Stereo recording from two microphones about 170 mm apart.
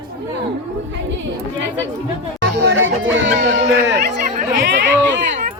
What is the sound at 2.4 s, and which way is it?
Music, 85° right.